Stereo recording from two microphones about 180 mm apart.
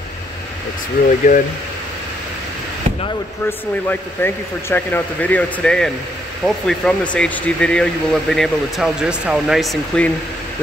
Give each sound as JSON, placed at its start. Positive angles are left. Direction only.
{"t": 1.0, "sound": "speech", "side_deg": 45}
{"t": 3.4, "sound": "speech", "side_deg": 10}